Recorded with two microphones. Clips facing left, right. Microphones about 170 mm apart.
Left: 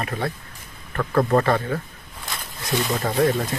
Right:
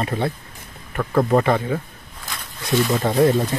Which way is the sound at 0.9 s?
10° right (ahead or behind).